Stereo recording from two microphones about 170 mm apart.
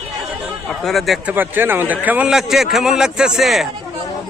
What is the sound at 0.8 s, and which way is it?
Speech, centre (ahead or behind).